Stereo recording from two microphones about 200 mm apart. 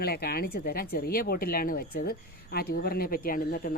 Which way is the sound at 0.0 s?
50° left (ahead or behind).